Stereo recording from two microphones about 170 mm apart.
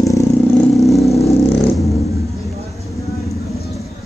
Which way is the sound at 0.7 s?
Centre (ahead or behind).